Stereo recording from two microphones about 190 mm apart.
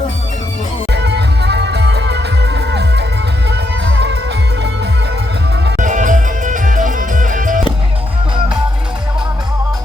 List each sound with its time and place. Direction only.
0.9 s music: 60° right (ahead or behind)
5.7 s music: 40° right (ahead or behind)